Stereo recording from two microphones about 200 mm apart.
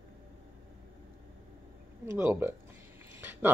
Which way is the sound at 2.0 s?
10° right (ahead or behind).